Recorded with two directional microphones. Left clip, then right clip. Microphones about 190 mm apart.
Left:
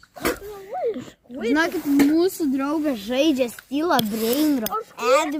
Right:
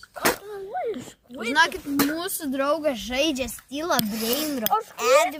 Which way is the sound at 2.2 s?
50° right (ahead or behind).